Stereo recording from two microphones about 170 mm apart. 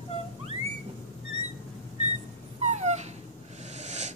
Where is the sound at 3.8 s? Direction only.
40° right (ahead or behind).